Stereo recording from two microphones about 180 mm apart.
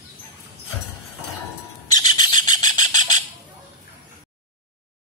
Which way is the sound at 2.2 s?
25° left (ahead or behind).